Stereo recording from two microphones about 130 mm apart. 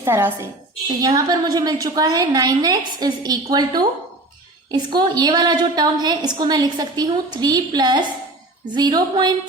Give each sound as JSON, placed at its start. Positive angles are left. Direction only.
{"t": 0.0, "sound": "a woman's voice", "side_deg": -15}
{"t": 0.9, "sound": "a woman's voice", "side_deg": -30}